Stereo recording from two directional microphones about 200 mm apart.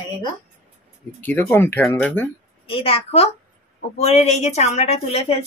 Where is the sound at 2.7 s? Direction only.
30° left (ahead or behind).